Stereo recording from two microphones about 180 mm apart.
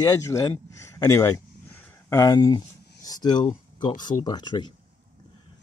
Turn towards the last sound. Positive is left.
turn(degrees=25)  # may be behind; listen again after turning